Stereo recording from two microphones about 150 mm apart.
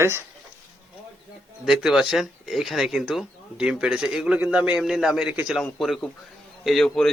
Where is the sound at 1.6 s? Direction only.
5° right (ahead or behind).